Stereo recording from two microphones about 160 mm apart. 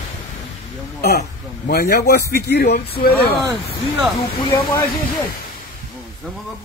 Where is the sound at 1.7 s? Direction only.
80° left.